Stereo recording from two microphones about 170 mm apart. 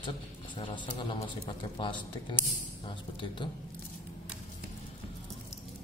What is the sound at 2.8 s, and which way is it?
Speech, 30° left (ahead or behind).